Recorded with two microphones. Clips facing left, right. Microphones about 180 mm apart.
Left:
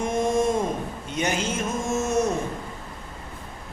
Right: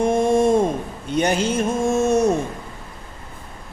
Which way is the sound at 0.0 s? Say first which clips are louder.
Right 6 dB; 30° right (ahead or behind).